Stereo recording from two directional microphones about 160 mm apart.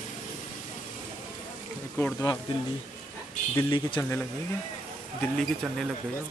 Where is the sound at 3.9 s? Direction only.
15° left (ahead or behind).